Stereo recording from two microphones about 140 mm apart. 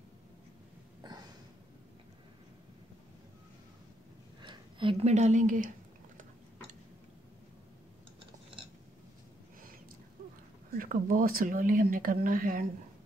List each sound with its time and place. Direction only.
4.4 s a sound: 35° right (ahead or behind)
5.0 s speech: 55° right (ahead or behind)
10.7 s speech: 90° right